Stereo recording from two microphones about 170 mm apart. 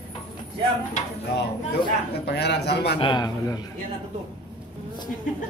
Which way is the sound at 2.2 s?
75° left (ahead or behind).